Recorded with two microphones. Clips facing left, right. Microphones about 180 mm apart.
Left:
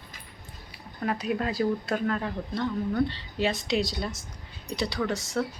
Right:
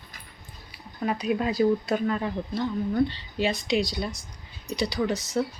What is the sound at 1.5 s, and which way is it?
Speech, 15° right (ahead or behind).